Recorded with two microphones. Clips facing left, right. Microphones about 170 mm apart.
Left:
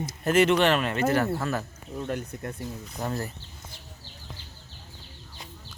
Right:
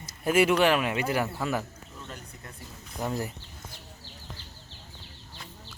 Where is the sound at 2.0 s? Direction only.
55° left (ahead or behind).